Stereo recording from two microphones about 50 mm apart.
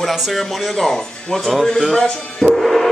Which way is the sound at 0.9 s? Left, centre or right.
Centre.